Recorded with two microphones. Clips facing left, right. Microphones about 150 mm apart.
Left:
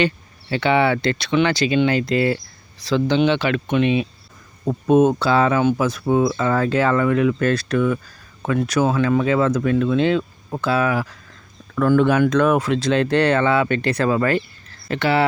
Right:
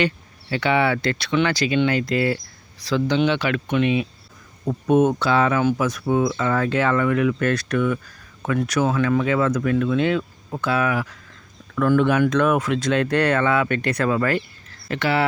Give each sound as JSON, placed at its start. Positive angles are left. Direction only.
{"t": 0.5, "sound": "speech", "side_deg": 25}